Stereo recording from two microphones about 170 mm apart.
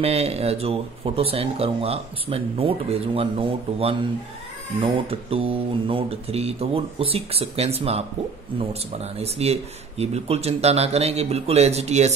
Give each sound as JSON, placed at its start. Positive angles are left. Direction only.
{"t": 0.0, "sound": "speech", "side_deg": -35}